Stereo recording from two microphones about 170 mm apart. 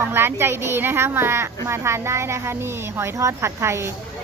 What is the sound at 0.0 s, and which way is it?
A woman's voice, 15° right (ahead or behind).